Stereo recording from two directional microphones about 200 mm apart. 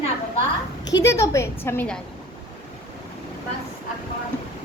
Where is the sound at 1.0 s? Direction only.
15° left (ahead or behind).